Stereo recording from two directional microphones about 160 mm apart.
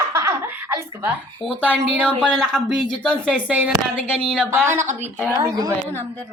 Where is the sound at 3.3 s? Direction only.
10° right (ahead or behind).